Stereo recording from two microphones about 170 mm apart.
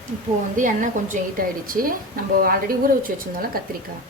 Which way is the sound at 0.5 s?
50° right (ahead or behind).